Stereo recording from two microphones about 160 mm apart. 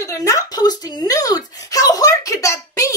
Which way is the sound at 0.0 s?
20° left (ahead or behind).